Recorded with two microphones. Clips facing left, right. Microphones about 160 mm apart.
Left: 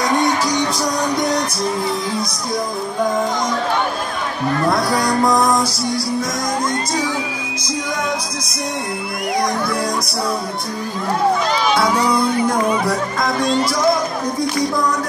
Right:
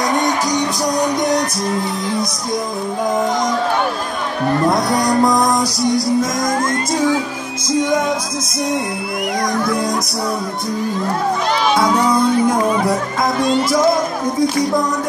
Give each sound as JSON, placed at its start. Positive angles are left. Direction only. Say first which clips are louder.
{"t": 4.6, "sound": "speech", "louder": "even", "side_deg": -20}
{"t": 11.8, "sound": "speech", "louder": "right 2 dB", "side_deg": -20}